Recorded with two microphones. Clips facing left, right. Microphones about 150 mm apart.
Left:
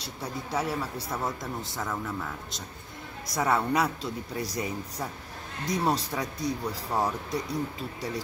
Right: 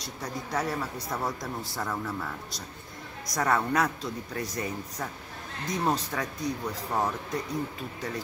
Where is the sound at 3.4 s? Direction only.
10° left (ahead or behind).